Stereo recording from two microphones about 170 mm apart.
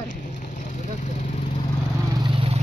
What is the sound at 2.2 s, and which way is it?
Vehicle, 30° right (ahead or behind).